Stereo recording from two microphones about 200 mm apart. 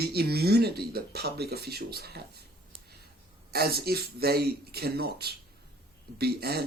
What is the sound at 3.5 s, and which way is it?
Speech, 50° right (ahead or behind).